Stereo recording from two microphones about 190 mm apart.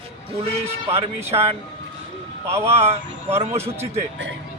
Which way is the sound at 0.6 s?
30° right (ahead or behind).